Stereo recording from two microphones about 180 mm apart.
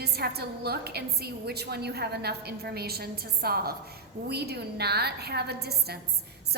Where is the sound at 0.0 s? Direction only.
60° right (ahead or behind).